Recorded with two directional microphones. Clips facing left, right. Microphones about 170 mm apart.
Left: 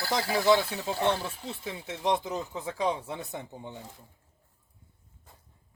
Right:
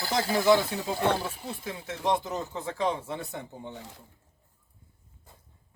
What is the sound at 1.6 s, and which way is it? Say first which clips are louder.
Speech: even; 20° left (ahead or behind).